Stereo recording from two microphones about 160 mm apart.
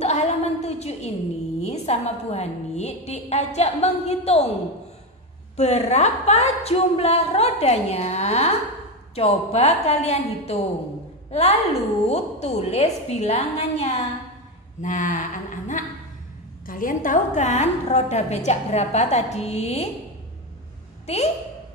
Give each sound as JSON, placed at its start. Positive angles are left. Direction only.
{"t": 0.0, "sound": "a sound", "side_deg": 40}
{"t": 1.6, "sound": "a woman's voice", "side_deg": 40}
{"t": 5.6, "sound": "a woman's voice", "side_deg": 45}
{"t": 21.1, "sound": "a woman's voice", "side_deg": 40}